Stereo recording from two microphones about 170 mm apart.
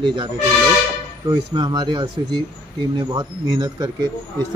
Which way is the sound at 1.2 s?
25° right (ahead or behind).